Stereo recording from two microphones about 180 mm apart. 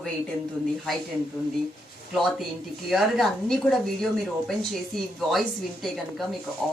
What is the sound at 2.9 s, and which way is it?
Speech, centre (ahead or behind).